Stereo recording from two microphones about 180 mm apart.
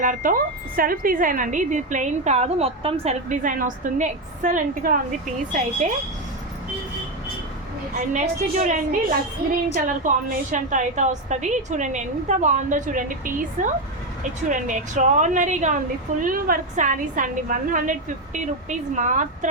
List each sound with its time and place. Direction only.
0.0 s a woman's voice: 50° right (ahead or behind)
7.9 s a woman's voice: 45° right (ahead or behind)